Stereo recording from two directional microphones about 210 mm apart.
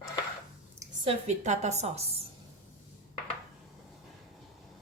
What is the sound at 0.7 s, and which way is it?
A woman's voice, 25° right (ahead or behind).